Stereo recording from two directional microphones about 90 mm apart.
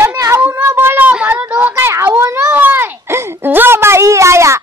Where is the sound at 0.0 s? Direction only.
30° right (ahead or behind).